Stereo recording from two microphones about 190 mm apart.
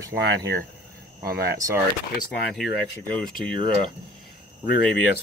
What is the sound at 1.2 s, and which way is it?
Speech, 55° right (ahead or behind).